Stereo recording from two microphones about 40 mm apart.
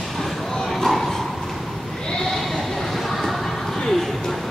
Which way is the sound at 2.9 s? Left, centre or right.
Centre.